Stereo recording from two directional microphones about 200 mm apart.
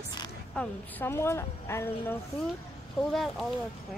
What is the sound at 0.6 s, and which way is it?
A woman's voice, 10° left (ahead or behind).